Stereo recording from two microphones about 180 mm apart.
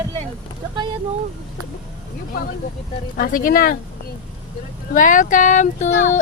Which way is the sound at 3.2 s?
50° left (ahead or behind).